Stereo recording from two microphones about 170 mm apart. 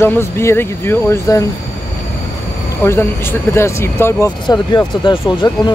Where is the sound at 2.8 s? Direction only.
15° left (ahead or behind).